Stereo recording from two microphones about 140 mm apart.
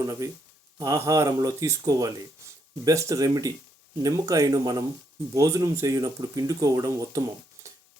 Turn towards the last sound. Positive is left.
turn(degrees=-25)  # may be behind; listen again after turning